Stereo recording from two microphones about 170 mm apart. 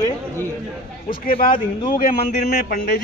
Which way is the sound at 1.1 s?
55° left (ahead or behind).